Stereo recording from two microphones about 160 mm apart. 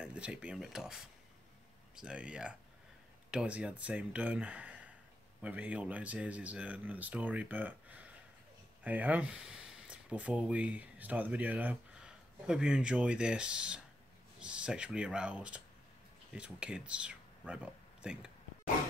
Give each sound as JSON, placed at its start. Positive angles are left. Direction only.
{"t": 0.0, "sound": "speech", "side_deg": -5}